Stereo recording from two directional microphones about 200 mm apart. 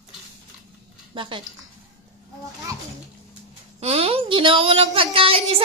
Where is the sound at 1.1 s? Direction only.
25° right (ahead or behind).